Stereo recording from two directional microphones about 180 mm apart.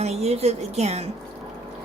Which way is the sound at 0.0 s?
35° right (ahead or behind).